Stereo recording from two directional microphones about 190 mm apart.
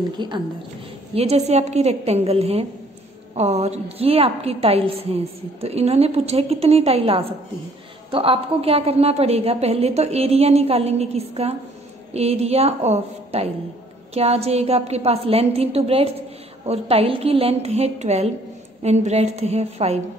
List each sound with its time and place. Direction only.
0.2 s a woman's voice: 25° right (ahead or behind)